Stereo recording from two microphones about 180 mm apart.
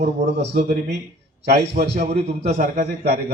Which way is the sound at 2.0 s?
40° right (ahead or behind).